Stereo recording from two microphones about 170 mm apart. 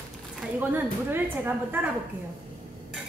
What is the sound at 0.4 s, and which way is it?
A woman's voice, 10° right (ahead or behind).